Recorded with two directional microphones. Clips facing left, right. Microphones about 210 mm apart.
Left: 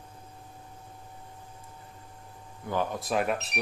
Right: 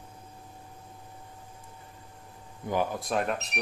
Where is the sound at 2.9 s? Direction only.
Centre (ahead or behind).